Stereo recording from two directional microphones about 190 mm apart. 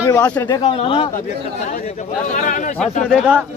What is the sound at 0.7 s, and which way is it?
Speech, 25° left (ahead or behind).